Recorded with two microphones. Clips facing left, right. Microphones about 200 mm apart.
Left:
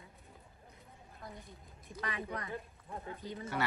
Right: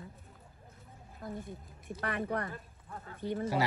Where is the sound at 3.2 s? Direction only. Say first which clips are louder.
Right 8 dB; 65° right (ahead or behind).